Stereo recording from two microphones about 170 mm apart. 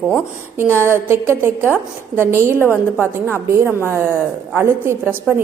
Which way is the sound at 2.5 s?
15° left (ahead or behind).